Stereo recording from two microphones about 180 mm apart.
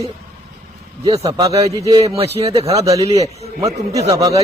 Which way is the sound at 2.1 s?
35° right (ahead or behind).